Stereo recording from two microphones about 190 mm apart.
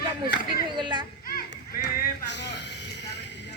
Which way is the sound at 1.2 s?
50° left (ahead or behind).